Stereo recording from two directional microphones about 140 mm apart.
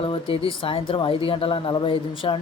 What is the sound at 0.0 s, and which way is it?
Speech, 40° left (ahead or behind).